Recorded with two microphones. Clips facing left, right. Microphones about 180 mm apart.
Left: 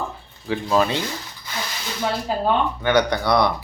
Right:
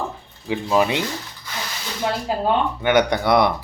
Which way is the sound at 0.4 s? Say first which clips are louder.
Right 1 dB; 15° right (ahead or behind).